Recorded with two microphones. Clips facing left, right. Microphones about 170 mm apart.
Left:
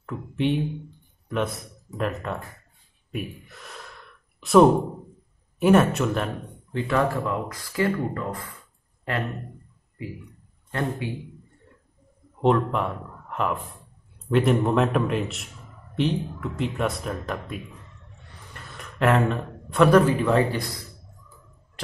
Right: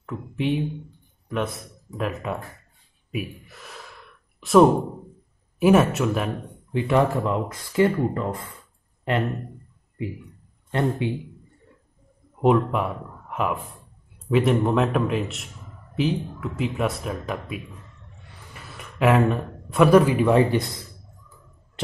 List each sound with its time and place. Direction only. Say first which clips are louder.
0.0 s a man's voice: left 1 dB; centre (ahead or behind)
3.1 s gasp: right 2 dB; 5° right (ahead or behind)
5.6 s a man's voice: right 1 dB; 5° right (ahead or behind)
6.7 s speech: right 3 dB; 15° right (ahead or behind)
10.7 s speech: right 4 dB; 25° right (ahead or behind)
12.4 s a man's voice: right 2 dB; 5° right (ahead or behind)